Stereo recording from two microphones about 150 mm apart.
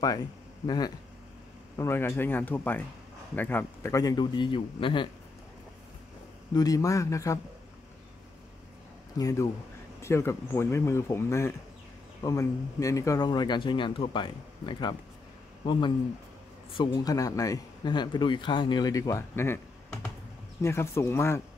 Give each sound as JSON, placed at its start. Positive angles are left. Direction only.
{"t": 0.7, "sound": "speech", "side_deg": 25}
{"t": 1.8, "sound": "speech", "side_deg": 15}
{"t": 6.5, "sound": "speech", "side_deg": 25}
{"t": 9.2, "sound": "speech", "side_deg": 20}